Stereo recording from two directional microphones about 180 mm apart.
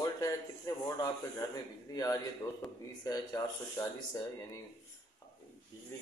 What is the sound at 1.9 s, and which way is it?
A man's voice, 20° left (ahead or behind).